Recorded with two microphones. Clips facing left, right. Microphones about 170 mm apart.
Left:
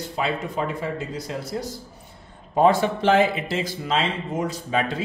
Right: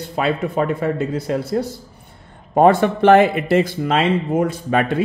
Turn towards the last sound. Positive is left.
turn(degrees=-60)  # may be behind; listen again after turning